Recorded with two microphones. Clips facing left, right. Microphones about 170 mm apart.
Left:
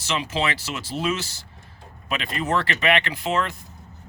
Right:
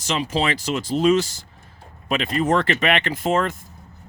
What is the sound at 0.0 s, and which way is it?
Speech, 45° right (ahead or behind).